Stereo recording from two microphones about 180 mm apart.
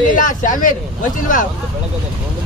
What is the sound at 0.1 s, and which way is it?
Speech, 45° left (ahead or behind).